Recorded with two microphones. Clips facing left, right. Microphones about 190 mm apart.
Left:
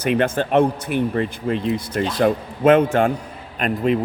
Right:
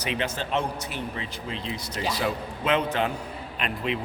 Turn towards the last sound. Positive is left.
turn(degrees=45)  # may be behind; listen again after turning